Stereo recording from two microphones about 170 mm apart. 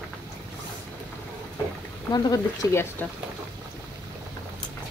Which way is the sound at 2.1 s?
20° left (ahead or behind).